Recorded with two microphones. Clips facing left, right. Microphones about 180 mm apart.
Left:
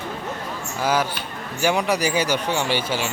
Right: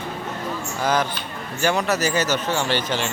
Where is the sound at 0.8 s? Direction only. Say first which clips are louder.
Left 1 dB; 10° left (ahead or behind).